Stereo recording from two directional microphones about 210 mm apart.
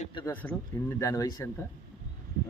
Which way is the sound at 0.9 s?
15° left (ahead or behind).